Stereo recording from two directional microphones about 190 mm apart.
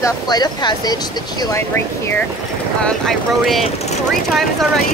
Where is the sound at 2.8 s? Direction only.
Centre (ahead or behind).